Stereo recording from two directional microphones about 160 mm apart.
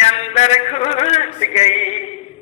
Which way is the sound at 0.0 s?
40° left (ahead or behind).